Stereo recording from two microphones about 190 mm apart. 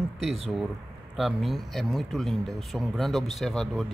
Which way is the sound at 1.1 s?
Centre (ahead or behind).